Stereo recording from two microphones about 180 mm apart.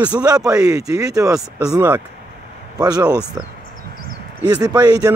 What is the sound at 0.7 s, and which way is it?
Speech, 20° right (ahead or behind).